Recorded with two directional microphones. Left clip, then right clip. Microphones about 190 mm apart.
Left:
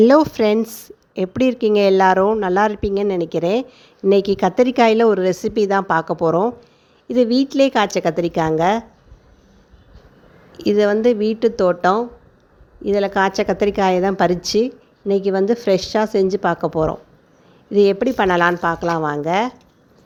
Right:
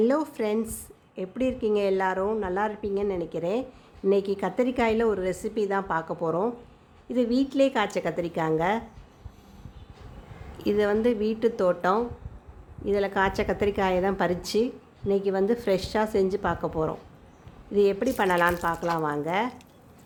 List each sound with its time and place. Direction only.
0.0 s a woman's voice: 45° left (ahead or behind)
10.6 s a woman's voice: 35° left (ahead or behind)